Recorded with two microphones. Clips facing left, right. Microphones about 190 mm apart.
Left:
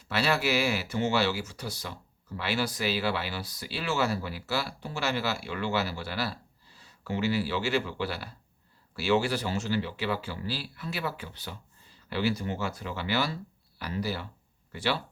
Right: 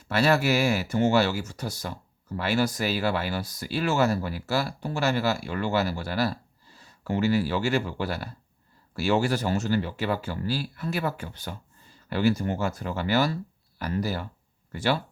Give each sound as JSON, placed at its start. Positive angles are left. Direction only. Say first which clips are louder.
{"t": 0.1, "sound": "speech", "louder": "right 5 dB", "side_deg": -45}